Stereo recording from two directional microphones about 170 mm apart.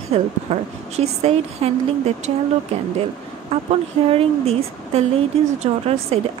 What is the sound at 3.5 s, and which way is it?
A woman's voice, 35° right (ahead or behind).